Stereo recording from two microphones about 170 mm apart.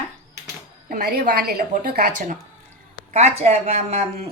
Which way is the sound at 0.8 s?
60° right (ahead or behind).